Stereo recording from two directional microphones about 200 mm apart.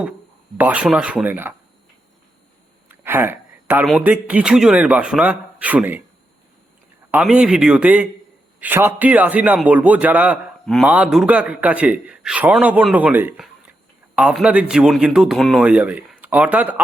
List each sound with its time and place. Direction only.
0.5 s a man's voice: 5° right (ahead or behind)
2.9 s a sound: 10° right (ahead or behind)
3.8 s a man's voice: 5° right (ahead or behind)
7.1 s a man's voice: 5° right (ahead or behind)